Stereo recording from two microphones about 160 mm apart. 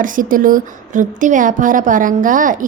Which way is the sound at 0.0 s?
60° right (ahead or behind).